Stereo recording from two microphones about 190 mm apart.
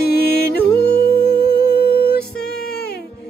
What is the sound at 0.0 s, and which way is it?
Music, 60° left (ahead or behind).